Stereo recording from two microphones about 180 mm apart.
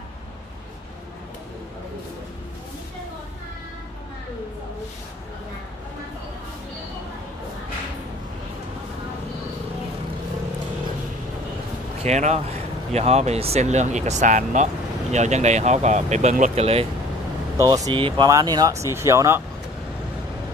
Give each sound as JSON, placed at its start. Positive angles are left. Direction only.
{"t": 12.0, "sound": "speech", "side_deg": -40}
{"t": 17.6, "sound": "speech", "side_deg": -20}